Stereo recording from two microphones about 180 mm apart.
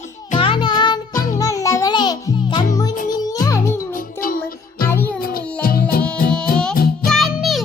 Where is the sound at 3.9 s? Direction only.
50° left (ahead or behind).